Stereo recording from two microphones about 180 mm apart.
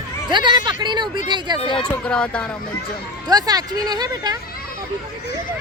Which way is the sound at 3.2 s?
20° right (ahead or behind).